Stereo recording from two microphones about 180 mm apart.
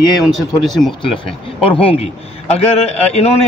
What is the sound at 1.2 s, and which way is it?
Speech, 30° left (ahead or behind).